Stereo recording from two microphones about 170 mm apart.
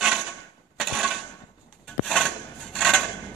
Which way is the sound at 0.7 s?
Centre (ahead or behind).